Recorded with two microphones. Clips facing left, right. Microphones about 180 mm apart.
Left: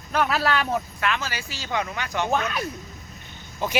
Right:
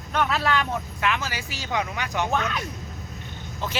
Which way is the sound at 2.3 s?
10° left (ahead or behind).